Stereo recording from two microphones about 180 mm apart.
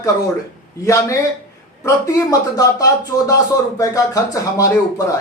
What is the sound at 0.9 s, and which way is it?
Speech, 15° left (ahead or behind).